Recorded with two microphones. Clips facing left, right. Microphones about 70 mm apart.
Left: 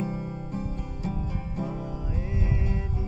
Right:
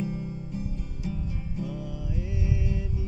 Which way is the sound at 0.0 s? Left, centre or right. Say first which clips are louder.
Left 1 dB; left.